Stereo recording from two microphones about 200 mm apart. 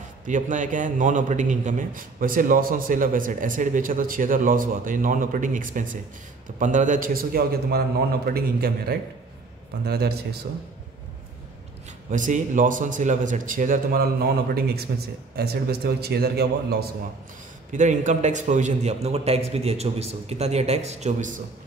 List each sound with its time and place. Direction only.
0.3 s a man's voice: 40° right (ahead or behind)
12.1 s a man's voice: 40° right (ahead or behind)
17.6 s a man's voice: 40° right (ahead or behind)